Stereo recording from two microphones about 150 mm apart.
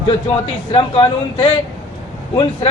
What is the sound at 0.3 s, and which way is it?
A man's voice, 35° left (ahead or behind).